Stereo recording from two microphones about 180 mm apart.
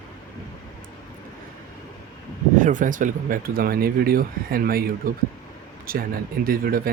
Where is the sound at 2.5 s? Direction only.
45° right (ahead or behind).